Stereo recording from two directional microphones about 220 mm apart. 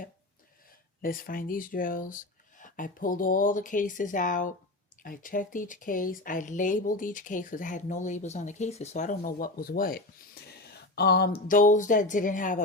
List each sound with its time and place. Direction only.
1.0 s a woman's voice: 40° left (ahead or behind)
10.4 s a sound: 45° left (ahead or behind)
11.4 s a woman's voice: 35° left (ahead or behind)